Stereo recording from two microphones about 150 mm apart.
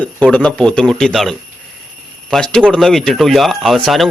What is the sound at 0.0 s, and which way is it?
Speech, 10° left (ahead or behind).